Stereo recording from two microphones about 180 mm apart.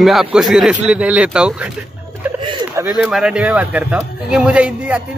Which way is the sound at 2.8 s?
5° right (ahead or behind).